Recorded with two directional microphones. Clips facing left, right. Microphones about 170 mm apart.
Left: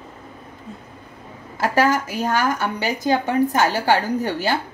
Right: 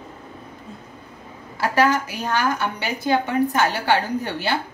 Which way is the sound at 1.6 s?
45° left (ahead or behind).